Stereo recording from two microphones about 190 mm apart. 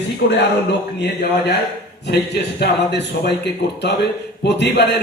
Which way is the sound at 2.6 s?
60° left (ahead or behind).